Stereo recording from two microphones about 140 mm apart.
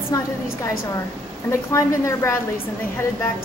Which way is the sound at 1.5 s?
20° left (ahead or behind).